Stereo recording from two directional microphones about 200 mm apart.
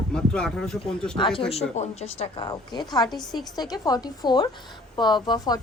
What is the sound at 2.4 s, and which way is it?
A woman's voice, 20° left (ahead or behind).